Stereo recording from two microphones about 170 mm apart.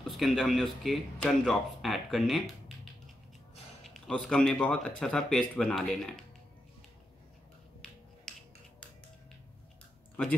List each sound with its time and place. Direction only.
0.0 s speech: centre (ahead or behind)
7.8 s music: 5° left (ahead or behind)